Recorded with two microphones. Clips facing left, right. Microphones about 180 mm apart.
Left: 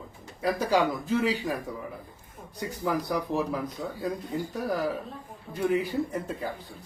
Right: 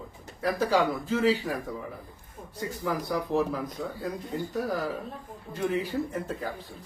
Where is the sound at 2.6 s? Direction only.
15° left (ahead or behind).